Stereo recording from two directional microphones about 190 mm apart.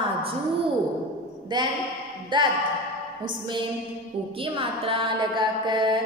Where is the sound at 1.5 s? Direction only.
25° right (ahead or behind).